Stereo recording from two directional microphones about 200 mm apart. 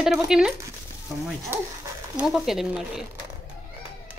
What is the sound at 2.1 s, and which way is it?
Speech, centre (ahead or behind).